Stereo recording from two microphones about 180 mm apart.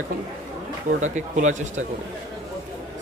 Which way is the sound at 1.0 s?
45° right (ahead or behind).